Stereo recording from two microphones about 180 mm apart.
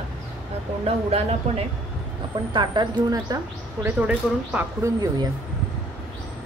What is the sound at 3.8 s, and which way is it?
Speech, 10° right (ahead or behind).